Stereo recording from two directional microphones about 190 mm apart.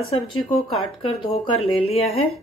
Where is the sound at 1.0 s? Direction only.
30° left (ahead or behind).